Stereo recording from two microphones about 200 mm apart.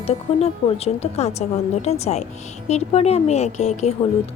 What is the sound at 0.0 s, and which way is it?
A woman's voice, 30° left (ahead or behind).